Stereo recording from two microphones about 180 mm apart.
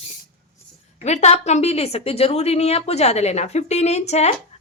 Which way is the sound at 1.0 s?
40° left (ahead or behind).